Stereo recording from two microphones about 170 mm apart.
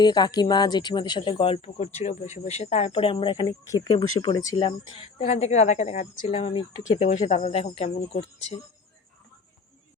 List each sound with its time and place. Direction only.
0.0 s speech: 25° left (ahead or behind)
3.4 s speech: 20° left (ahead or behind)
5.1 s speech: 40° left (ahead or behind)
6.8 s speech: 45° left (ahead or behind)